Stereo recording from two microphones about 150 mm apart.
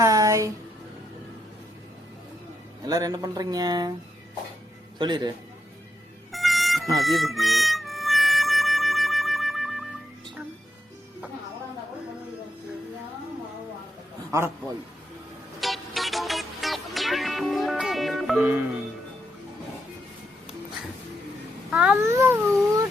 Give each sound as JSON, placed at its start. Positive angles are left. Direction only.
{"t": 0.0, "sound": "a sound", "side_deg": -20}
{"t": 2.8, "sound": "speech", "side_deg": -25}
{"t": 4.9, "sound": "speech", "side_deg": -30}
{"t": 6.3, "sound": "a sound", "side_deg": 0}
{"t": 6.9, "sound": "music", "side_deg": 0}
{"t": 14.3, "sound": "a man's voice", "side_deg": -15}
{"t": 15.6, "sound": "music", "side_deg": 0}
{"t": 21.7, "sound": "babbling", "side_deg": -5}
{"t": 22.0, "sound": "speech", "side_deg": -20}